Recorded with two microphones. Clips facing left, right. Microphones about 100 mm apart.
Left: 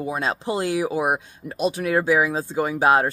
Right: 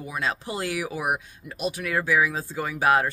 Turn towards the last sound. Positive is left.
turn(degrees=30)  # may be behind; listen again after turning